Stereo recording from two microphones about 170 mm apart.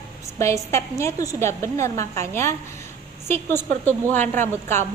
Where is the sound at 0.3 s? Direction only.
15° left (ahead or behind).